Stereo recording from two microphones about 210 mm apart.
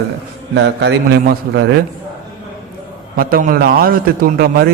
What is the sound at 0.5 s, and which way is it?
A man's voice, 60° right (ahead or behind).